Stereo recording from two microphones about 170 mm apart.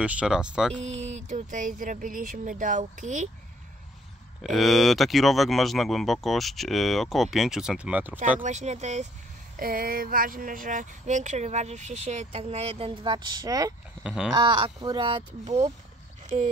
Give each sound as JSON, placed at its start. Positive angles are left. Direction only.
{"t": 0.0, "sound": "speech", "side_deg": -5}
{"t": 0.8, "sound": "speech", "side_deg": -40}
{"t": 4.4, "sound": "speech", "side_deg": 0}
{"t": 8.4, "sound": "speech", "side_deg": -45}
{"t": 9.6, "sound": "speech", "side_deg": -55}
{"t": 14.0, "sound": "speech", "side_deg": -5}
{"t": 14.3, "sound": "speech", "side_deg": -25}